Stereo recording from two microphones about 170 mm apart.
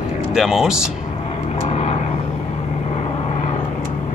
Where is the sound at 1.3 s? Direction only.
40° left (ahead or behind).